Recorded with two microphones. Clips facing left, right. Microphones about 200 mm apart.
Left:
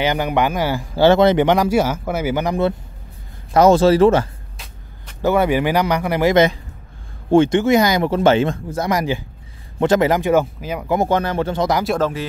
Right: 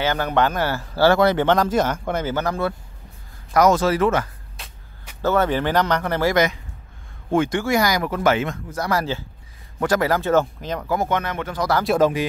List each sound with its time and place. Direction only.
0.0 s speech: 15° left (ahead or behind)
3.5 s speech: 30° left (ahead or behind)
5.2 s speech: 10° left (ahead or behind)
6.3 s speech: 25° left (ahead or behind); by 10.9 s 10° left (ahead or behind)
11.1 s speech: 30° left (ahead or behind)
12.0 s speech: 15° right (ahead or behind)